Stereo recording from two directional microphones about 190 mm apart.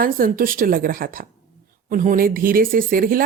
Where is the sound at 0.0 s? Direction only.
45° right (ahead or behind).